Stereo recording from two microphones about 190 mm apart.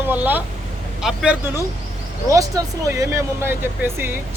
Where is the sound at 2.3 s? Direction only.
15° right (ahead or behind).